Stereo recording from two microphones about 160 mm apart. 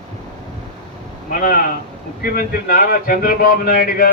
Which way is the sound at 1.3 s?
60° left (ahead or behind).